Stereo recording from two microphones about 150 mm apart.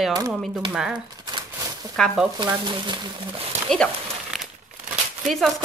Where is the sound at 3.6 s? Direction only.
5° left (ahead or behind).